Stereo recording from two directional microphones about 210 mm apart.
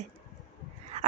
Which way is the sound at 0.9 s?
30° right (ahead or behind).